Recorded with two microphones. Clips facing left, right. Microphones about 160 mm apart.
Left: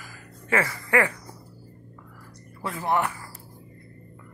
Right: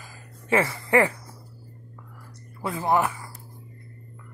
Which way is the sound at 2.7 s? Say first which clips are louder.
Right 2 dB; 25° right (ahead or behind).